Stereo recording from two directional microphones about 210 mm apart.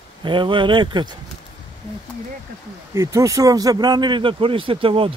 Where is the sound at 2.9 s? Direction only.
15° right (ahead or behind).